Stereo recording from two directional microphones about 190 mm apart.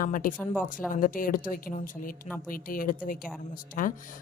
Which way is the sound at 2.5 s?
50° left (ahead or behind).